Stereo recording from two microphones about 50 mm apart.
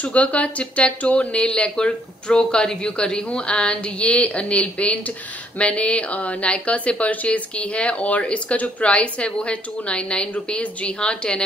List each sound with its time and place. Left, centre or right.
0.0 s speech: left